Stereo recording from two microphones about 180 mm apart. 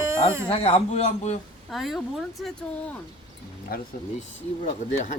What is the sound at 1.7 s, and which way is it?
Speech, centre (ahead or behind).